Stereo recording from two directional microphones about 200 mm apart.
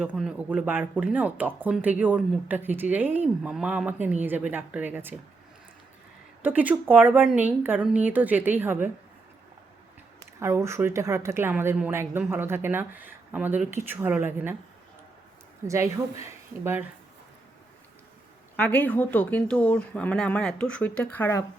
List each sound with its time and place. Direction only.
0.0 s speech: 5° right (ahead or behind)
6.4 s speech: 10° right (ahead or behind)
10.4 s speech: 15° right (ahead or behind)
15.6 s speech: 15° right (ahead or behind)
18.5 s speech: 5° left (ahead or behind)